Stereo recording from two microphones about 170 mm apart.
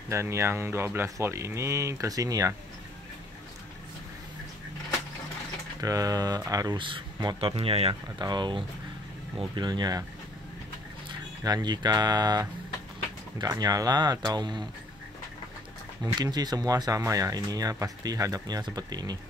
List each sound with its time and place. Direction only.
0.1 s speech: 15° right (ahead or behind)
5.8 s speech: 20° right (ahead or behind); by 7.9 s 35° right (ahead or behind)
7.9 s speech: 25° right (ahead or behind)
11.4 s speech: 25° right (ahead or behind)
16.0 s speech: 25° right (ahead or behind)